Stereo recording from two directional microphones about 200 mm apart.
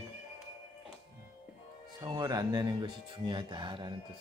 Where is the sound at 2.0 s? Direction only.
20° right (ahead or behind).